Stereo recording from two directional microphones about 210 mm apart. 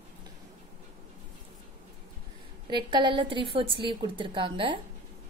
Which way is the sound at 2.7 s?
20° right (ahead or behind).